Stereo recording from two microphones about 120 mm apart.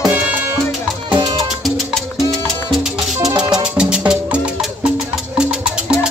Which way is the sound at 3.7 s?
5° right (ahead or behind).